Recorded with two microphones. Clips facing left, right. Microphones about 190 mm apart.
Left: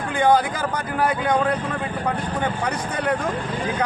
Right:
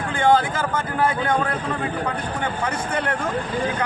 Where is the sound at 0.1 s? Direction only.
15° left (ahead or behind).